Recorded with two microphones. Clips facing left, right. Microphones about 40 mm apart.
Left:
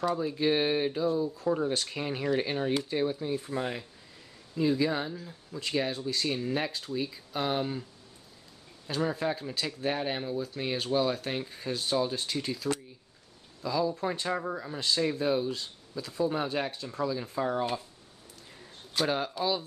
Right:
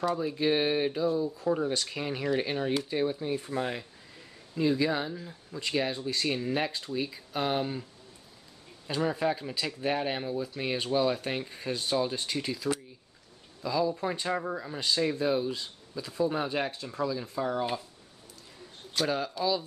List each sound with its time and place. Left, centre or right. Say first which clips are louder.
0.0 s speech: even; centre
5.1 s speech: right 1 dB; centre
8.8 s speech: right 1 dB; centre
17.0 s speech: even; centre
19.0 s speech: even; centre